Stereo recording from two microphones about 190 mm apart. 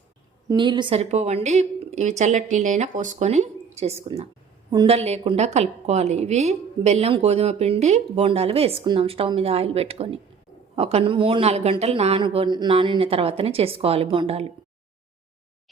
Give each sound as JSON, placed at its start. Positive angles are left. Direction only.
{"t": 0.4, "sound": "a woman's voice", "side_deg": -25}